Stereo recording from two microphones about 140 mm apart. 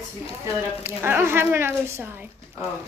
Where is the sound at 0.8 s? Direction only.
15° right (ahead or behind).